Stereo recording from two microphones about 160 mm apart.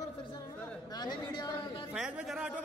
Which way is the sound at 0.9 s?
25° left (ahead or behind).